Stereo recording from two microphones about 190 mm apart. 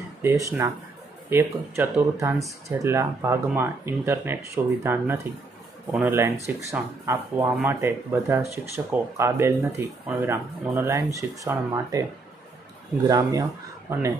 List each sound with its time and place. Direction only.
0.2 s speech: 15° right (ahead or behind)
13.1 s speech: 20° right (ahead or behind)